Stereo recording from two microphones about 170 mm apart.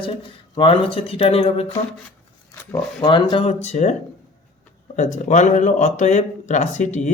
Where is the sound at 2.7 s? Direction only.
25° left (ahead or behind); by 3.9 s 40° left (ahead or behind).